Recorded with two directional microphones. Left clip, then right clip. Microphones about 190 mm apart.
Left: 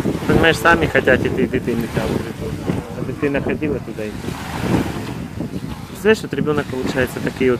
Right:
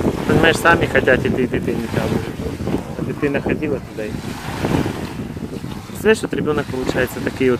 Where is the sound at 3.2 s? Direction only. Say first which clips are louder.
Even; 15° right (ahead or behind).